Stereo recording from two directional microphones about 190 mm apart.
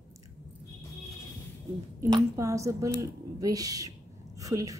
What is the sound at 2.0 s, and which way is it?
A woman's voice, 15° right (ahead or behind).